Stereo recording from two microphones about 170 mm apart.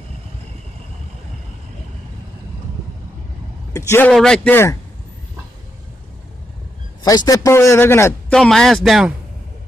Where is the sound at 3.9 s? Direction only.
5° left (ahead or behind).